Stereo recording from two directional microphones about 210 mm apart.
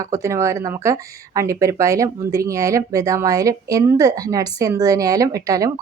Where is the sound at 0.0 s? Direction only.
15° right (ahead or behind).